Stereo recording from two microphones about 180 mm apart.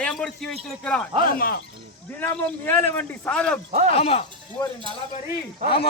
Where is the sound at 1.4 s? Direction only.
60° left (ahead or behind).